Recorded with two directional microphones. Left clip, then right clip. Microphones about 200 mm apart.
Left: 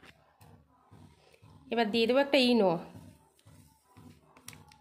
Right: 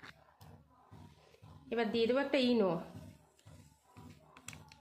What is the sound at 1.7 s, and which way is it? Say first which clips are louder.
A woman's voice: left 5 dB; 45° left (ahead or behind).